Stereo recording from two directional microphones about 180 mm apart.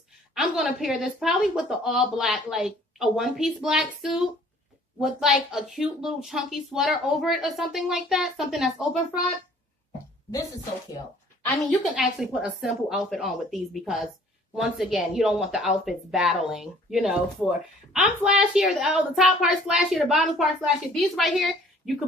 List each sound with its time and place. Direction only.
0.3 s speech: centre (ahead or behind)
10.3 s speech: 20° left (ahead or behind)
11.9 s a woman's voice: 5° right (ahead or behind)